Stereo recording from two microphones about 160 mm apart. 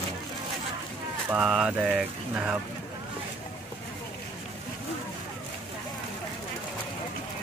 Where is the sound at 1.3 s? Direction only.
5° right (ahead or behind).